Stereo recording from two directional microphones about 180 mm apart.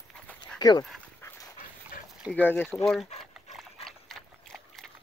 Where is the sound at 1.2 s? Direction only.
10° left (ahead or behind).